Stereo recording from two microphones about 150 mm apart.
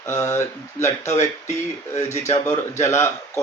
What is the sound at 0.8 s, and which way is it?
Speech, 50° left (ahead or behind).